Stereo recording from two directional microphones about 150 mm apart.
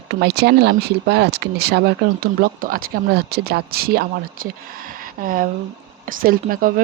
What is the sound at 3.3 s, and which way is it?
Speech, 90° right.